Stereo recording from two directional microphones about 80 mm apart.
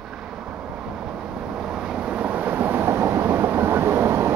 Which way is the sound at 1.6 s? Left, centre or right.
Centre.